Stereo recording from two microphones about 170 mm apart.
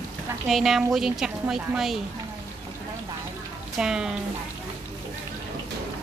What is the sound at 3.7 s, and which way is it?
Speech, 5° right (ahead or behind).